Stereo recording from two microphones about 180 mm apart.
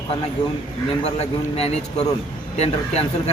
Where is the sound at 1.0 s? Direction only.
35° left (ahead or behind).